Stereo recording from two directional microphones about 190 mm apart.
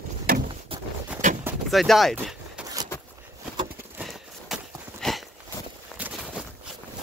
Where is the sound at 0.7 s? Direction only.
30° right (ahead or behind).